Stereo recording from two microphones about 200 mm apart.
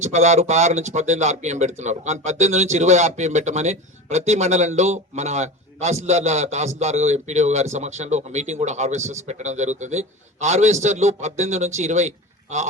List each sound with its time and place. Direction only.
0.0 s speech: 35° right (ahead or behind)